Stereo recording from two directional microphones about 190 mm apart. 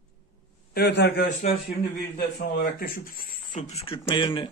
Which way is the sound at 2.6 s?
50° left (ahead or behind).